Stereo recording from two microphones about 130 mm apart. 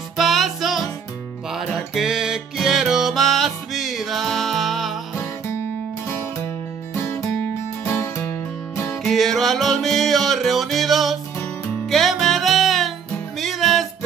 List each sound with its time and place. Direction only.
0.2 s music: centre (ahead or behind)
7.0 s music: 20° left (ahead or behind)
9.0 s music: centre (ahead or behind)